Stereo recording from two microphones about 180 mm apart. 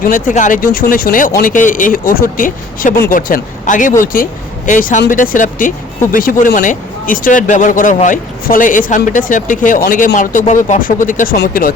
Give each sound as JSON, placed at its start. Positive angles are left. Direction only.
{"t": 0.0, "sound": "speech", "side_deg": 45}